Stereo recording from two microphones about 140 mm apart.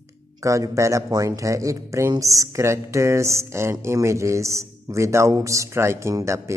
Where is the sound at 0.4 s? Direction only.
20° right (ahead or behind).